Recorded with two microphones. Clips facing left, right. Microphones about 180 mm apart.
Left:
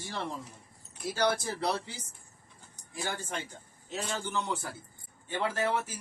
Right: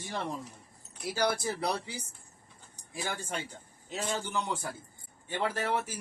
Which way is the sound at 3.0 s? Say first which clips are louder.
Even; 10° right (ahead or behind).